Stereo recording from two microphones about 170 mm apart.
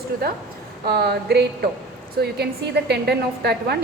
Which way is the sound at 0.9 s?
70° right (ahead or behind).